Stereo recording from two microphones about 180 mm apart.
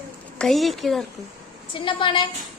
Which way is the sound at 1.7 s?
30° left (ahead or behind).